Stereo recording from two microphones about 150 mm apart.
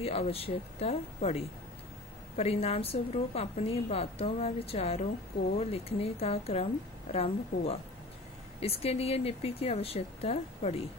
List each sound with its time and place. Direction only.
0.0 s a woman's voice: 40° left (ahead or behind)